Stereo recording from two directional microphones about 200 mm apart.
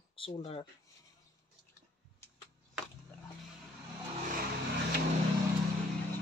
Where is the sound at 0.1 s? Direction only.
25° left (ahead or behind).